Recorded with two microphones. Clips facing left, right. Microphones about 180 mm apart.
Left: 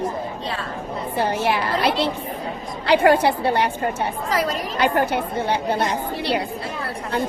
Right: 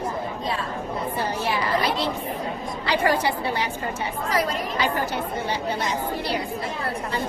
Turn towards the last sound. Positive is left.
turn(degrees=65)  # may be behind; listen again after turning